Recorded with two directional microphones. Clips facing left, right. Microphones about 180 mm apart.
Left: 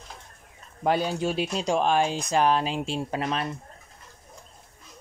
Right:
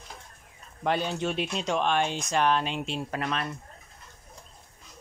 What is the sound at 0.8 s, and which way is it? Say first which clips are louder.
Speech: left 3 dB; 40° left (ahead or behind).